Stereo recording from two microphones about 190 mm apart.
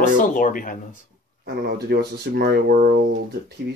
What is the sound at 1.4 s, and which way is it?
Speech, 55° right (ahead or behind).